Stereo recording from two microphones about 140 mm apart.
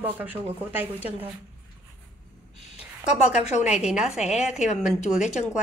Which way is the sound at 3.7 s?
5° right (ahead or behind).